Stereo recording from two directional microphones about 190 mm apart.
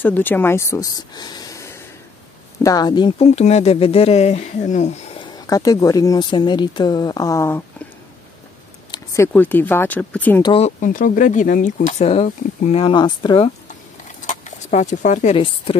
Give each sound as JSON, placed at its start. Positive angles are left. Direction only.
{"t": 0.0, "sound": "speech", "side_deg": 10}
{"t": 5.2, "sound": "speech", "side_deg": 20}
{"t": 8.9, "sound": "speech", "side_deg": 15}
{"t": 10.4, "sound": "speech", "side_deg": 30}
{"t": 10.8, "sound": "speech", "side_deg": 45}
{"t": 13.7, "sound": "a sound", "side_deg": 40}
{"t": 15.3, "sound": "speech", "side_deg": 30}